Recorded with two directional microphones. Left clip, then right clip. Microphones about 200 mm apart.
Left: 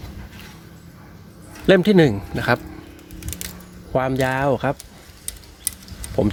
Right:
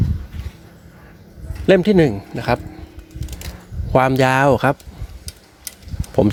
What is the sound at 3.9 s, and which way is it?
Speech, 25° right (ahead or behind).